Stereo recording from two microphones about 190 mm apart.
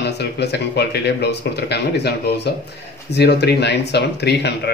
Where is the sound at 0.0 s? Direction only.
60° left (ahead or behind).